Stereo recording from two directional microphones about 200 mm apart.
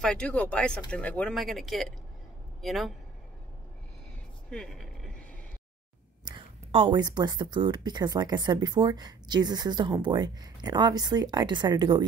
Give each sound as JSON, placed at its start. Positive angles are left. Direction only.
{"t": 0.0, "sound": "speech", "side_deg": 5}
{"t": 4.5, "sound": "vehicle", "side_deg": 5}
{"t": 6.2, "sound": "a sound", "side_deg": -25}
{"t": 7.5, "sound": "speech", "side_deg": -20}